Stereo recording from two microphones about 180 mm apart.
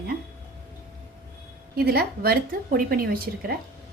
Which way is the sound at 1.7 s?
60° right (ahead or behind).